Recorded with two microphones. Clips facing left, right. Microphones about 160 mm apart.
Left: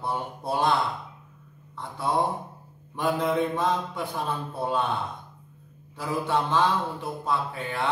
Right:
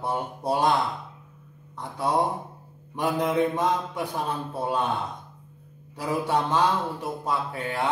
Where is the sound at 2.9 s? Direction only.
20° right (ahead or behind).